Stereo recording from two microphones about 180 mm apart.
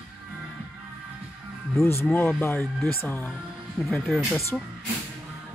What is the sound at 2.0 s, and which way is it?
Speech, 10° left (ahead or behind).